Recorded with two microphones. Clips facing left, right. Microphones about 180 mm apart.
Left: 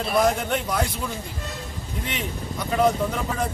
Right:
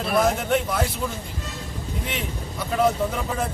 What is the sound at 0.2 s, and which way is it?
Speech, 5° right (ahead or behind).